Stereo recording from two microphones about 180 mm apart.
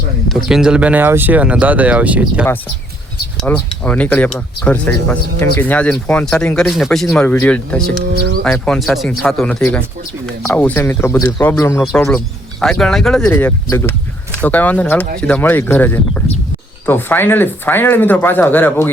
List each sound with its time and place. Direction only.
0.3 s speech: centre (ahead or behind)
3.4 s speech: 5° left (ahead or behind)
11.9 s speech: 5° left (ahead or behind)
13.3 s speech: 15° left (ahead or behind)